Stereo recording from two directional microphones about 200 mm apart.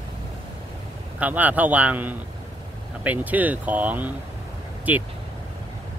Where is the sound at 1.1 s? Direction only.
10° right (ahead or behind).